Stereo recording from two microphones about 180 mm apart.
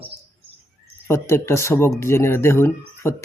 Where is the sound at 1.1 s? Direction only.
15° left (ahead or behind).